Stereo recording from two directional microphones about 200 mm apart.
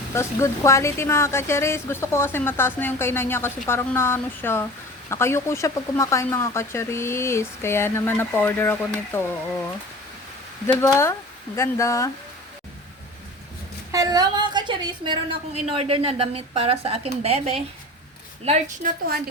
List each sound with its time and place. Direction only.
0.1 s speech: 15° left (ahead or behind)
10.8 s speech: 15° left (ahead or behind)
13.9 s a woman's voice: 20° right (ahead or behind); by 19.0 s 40° right (ahead or behind)